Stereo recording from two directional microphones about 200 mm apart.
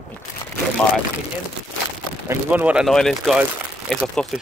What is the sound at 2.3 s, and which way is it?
Speech, 10° right (ahead or behind).